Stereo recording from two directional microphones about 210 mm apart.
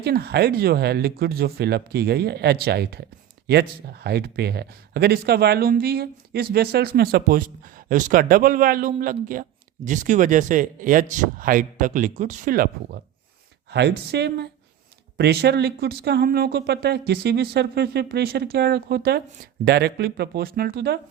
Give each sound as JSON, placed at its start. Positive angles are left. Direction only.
{"t": 0.0, "sound": "speech", "side_deg": -50}
{"t": 13.7, "sound": "speech", "side_deg": -55}